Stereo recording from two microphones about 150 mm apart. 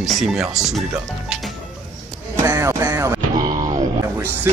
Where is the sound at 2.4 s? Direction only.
20° right (ahead or behind).